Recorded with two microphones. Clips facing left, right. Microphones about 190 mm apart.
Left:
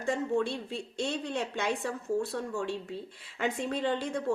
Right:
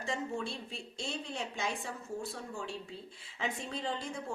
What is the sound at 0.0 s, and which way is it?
Speech, 55° left (ahead or behind).